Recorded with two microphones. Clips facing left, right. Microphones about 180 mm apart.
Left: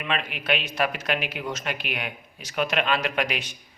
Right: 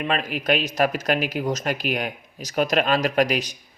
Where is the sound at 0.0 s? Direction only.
40° right (ahead or behind).